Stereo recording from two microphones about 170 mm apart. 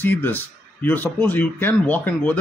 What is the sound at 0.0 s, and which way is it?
Speech, 10° left (ahead or behind).